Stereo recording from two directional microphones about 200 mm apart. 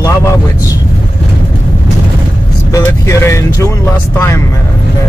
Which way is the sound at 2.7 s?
15° left (ahead or behind).